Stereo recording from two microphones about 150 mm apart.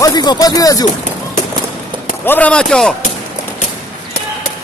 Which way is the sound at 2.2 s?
10° left (ahead or behind).